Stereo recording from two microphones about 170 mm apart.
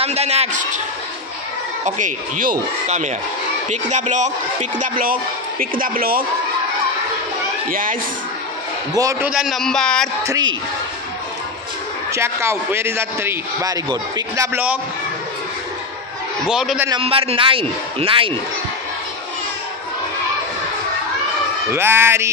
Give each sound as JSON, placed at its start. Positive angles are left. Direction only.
{"t": 0.0, "sound": "a man's voice", "side_deg": -40}
{"t": 1.9, "sound": "speech", "side_deg": -50}
{"t": 7.7, "sound": "speech", "side_deg": -55}
{"t": 9.2, "sound": "speech", "side_deg": 0}
{"t": 10.2, "sound": "speech", "side_deg": -20}
{"t": 12.1, "sound": "a man's voice", "side_deg": -15}
{"t": 16.4, "sound": "speech", "side_deg": -5}
{"t": 16.9, "sound": "a man's voice", "side_deg": -35}
{"t": 21.6, "sound": "a man's voice", "side_deg": -15}